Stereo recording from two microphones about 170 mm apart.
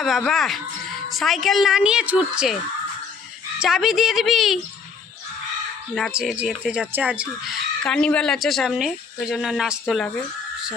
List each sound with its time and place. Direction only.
0.3 s speech: centre (ahead or behind)
3.6 s speech: centre (ahead or behind)
6.1 s speech: 5° right (ahead or behind)